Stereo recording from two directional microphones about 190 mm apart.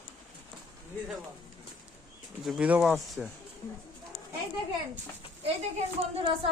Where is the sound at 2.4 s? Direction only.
5° right (ahead or behind).